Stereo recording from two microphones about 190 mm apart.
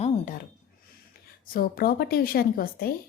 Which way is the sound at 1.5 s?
50° left (ahead or behind).